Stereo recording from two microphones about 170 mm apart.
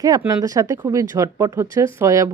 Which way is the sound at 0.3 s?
20° right (ahead or behind).